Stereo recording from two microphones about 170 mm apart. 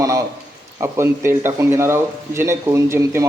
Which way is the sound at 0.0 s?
15° right (ahead or behind).